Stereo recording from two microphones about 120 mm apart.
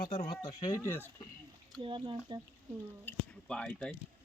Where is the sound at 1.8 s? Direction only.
40° right (ahead or behind).